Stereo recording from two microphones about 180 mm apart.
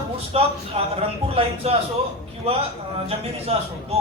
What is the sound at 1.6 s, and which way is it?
Speech, 35° right (ahead or behind).